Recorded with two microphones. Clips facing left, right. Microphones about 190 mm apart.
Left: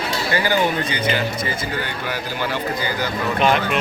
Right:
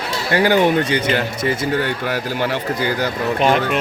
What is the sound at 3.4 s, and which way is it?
Speech, 40° right (ahead or behind).